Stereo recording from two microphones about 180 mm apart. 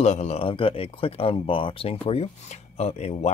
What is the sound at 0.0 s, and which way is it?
Speech, 40° left (ahead or behind).